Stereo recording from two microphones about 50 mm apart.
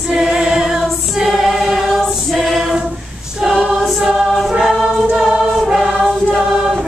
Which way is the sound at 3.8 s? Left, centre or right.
Centre.